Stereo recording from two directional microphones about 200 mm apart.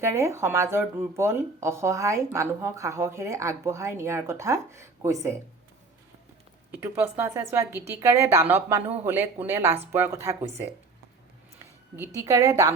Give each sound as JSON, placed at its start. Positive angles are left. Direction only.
{"t": 0.0, "sound": "speech", "side_deg": -15}
{"t": 6.7, "sound": "speech", "side_deg": -10}
{"t": 11.9, "sound": "speech", "side_deg": -15}